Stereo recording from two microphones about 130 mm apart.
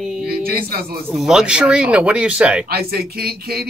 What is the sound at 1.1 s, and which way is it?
Speech, 5° right (ahead or behind).